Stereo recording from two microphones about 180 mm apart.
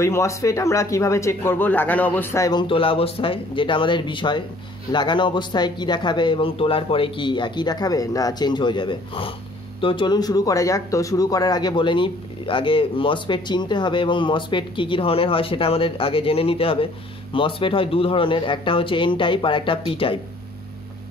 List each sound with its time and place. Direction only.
0.0 s a man's voice: 15° left (ahead or behind)